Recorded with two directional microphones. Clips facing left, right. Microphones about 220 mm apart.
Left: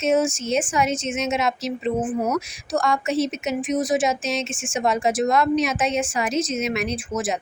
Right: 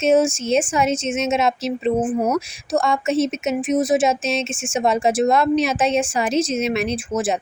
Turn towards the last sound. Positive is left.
turn(degrees=-30)  # may be behind; listen again after turning